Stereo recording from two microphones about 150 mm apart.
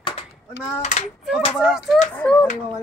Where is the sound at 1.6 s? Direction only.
Centre (ahead or behind).